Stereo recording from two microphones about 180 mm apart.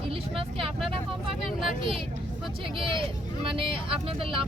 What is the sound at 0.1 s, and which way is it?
Speech, 30° right (ahead or behind).